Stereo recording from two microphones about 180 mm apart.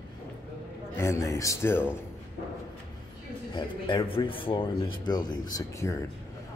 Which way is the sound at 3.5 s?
25° left (ahead or behind).